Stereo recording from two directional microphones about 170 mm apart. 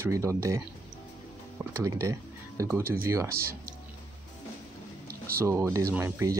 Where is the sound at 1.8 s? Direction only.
20° right (ahead or behind).